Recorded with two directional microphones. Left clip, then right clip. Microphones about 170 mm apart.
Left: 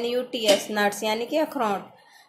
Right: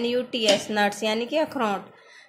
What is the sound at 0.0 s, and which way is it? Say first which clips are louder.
A woman's voice: right 1 dB; 5° right (ahead or behind).